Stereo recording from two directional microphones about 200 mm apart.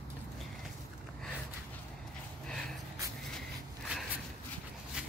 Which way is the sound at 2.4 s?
5° left (ahead or behind).